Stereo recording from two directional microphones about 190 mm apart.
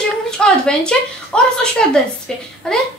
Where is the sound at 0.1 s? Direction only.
5° left (ahead or behind).